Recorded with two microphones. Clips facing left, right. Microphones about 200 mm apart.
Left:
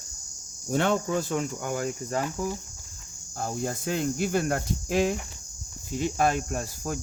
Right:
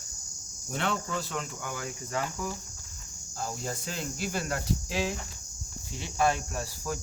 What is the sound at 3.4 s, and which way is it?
Cricket, 55° left (ahead or behind).